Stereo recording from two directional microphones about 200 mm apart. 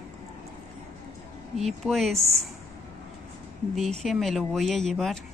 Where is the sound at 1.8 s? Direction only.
Centre (ahead or behind).